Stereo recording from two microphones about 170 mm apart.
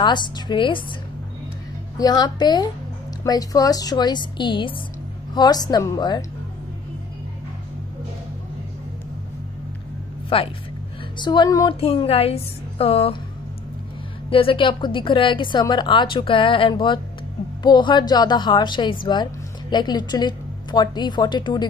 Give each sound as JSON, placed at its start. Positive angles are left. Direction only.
{"t": 0.0, "sound": "a woman's voice", "side_deg": 25}
{"t": 2.0, "sound": "a woman's voice", "side_deg": 25}
{"t": 10.3, "sound": "a woman's voice", "side_deg": 30}
{"t": 11.7, "sound": "a woman's voice", "side_deg": 35}
{"t": 14.3, "sound": "a woman's voice", "side_deg": 30}